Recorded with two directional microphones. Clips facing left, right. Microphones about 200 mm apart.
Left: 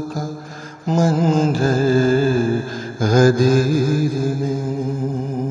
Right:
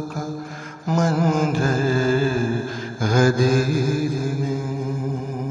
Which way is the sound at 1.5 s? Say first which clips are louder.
Left 5 dB; 40° left (ahead or behind).